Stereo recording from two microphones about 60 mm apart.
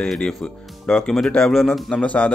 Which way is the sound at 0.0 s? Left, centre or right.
Centre.